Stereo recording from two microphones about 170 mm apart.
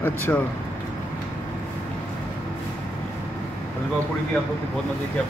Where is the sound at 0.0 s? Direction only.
10° left (ahead or behind).